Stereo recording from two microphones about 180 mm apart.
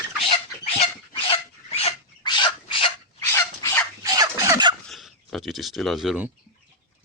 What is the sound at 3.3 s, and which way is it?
Dog, 15° left (ahead or behind).